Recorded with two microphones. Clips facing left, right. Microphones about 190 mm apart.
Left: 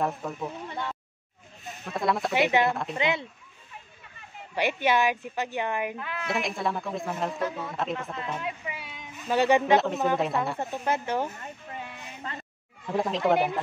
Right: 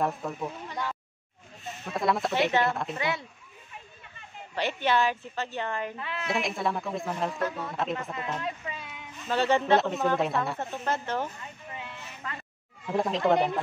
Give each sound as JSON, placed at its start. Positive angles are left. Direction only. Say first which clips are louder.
{"t": 0.0, "sound": "speech", "louder": "even", "side_deg": 0}
{"t": 0.7, "sound": "speech", "louder": "even", "side_deg": 25}
{"t": 1.9, "sound": "speech", "louder": "even", "side_deg": 0}
{"t": 3.0, "sound": "speech", "louder": "left 4 dB", "side_deg": 20}
{"t": 4.6, "sound": "a woman's voice", "louder": "left 2 dB", "side_deg": 10}
{"t": 5.9, "sound": "speech", "louder": "even", "side_deg": 0}
{"t": 8.5, "sound": "speech", "louder": "even", "side_deg": 10}
{"t": 9.8, "sound": "speech", "louder": "left 1 dB", "side_deg": 0}
{"t": 10.6, "sound": "a woman's voice", "louder": "left 2 dB", "side_deg": 15}
{"t": 12.2, "sound": "speech", "louder": "left 1 dB", "side_deg": 30}
{"t": 12.8, "sound": "speech", "louder": "even", "side_deg": 0}